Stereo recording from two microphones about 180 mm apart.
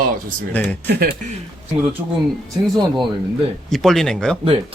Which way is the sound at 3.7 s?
Centre (ahead or behind).